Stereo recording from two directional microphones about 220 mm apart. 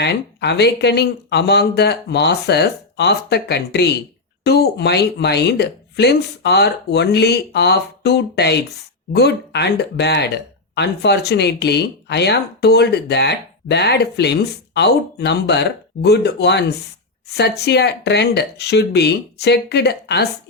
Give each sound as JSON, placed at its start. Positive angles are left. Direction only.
{"t": 0.0, "sound": "speech", "side_deg": 50}